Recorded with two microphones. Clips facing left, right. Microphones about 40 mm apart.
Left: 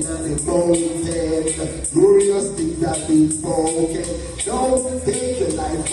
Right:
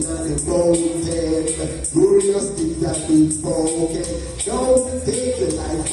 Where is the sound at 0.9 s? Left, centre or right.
Left.